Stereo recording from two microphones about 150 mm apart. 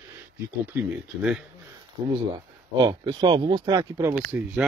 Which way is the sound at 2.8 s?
30° right (ahead or behind).